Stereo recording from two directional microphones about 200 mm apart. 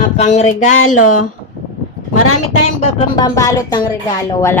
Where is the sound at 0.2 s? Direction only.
35° left (ahead or behind).